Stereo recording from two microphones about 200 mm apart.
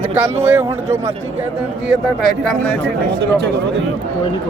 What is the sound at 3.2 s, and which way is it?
Speech, 60° right (ahead or behind).